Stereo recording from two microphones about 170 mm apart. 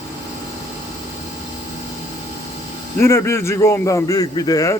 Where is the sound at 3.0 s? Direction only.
15° left (ahead or behind).